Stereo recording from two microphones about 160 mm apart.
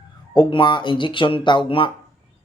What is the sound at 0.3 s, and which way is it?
Speech, 30° left (ahead or behind).